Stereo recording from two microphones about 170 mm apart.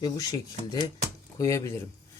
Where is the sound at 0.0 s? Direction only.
20° left (ahead or behind).